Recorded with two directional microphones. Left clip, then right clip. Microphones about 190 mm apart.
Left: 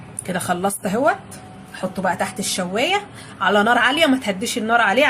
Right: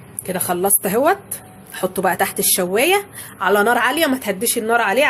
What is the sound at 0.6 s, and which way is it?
Speech, 40° right (ahead or behind).